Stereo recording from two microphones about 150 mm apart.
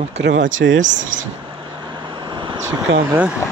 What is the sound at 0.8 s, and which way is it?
Speech, 55° right (ahead or behind).